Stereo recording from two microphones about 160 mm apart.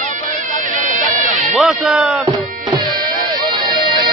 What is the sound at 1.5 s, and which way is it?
Speech, centre (ahead or behind).